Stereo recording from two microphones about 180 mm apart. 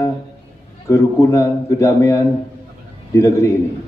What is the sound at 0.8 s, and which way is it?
A man's voice, 15° left (ahead or behind).